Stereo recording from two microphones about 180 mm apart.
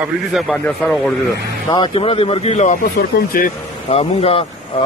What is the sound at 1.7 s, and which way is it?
Speech, 25° left (ahead or behind).